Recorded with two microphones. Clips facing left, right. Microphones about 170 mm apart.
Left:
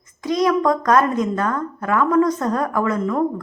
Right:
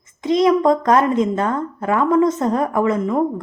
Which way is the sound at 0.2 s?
25° right (ahead or behind).